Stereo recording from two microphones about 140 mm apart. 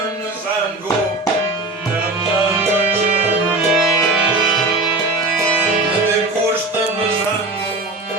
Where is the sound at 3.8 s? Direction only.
5° right (ahead or behind).